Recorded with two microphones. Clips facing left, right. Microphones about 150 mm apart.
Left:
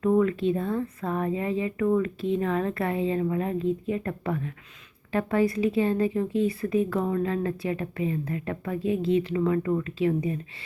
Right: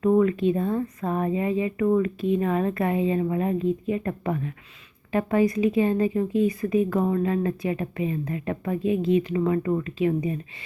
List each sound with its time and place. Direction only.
0.0 s a woman's voice: 15° right (ahead or behind)